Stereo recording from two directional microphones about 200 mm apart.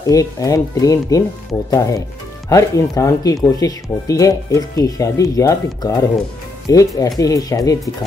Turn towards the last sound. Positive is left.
turn(degrees=15)  # may be behind; listen again after turning